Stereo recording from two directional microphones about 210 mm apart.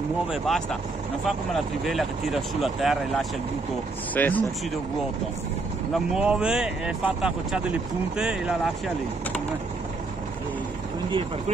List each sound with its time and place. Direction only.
0.3 s speech: centre (ahead or behind)
6.1 s speech: 5° right (ahead or behind)
11.1 s speech: 25° right (ahead or behind)